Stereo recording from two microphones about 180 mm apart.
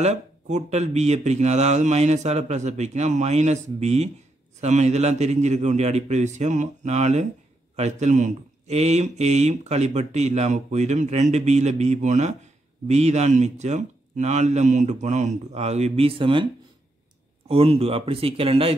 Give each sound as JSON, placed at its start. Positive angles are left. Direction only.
{"t": 0.0, "sound": "a man's voice", "side_deg": -40}
{"t": 17.5, "sound": "a man's voice", "side_deg": -35}